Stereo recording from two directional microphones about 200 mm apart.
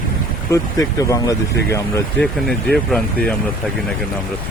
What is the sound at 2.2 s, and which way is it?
Speech, centre (ahead or behind).